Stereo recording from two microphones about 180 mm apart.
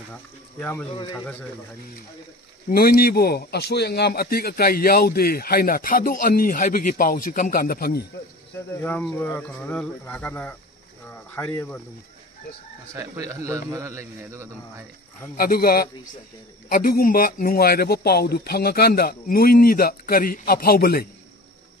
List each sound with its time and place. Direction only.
0.1 s speech: 10° left (ahead or behind)
2.7 s a man's voice: 55° left (ahead or behind)
8.8 s speech: 10° left (ahead or behind)
12.9 s a man's voice: 15° right (ahead or behind)
15.3 s a man's voice: 55° left (ahead or behind)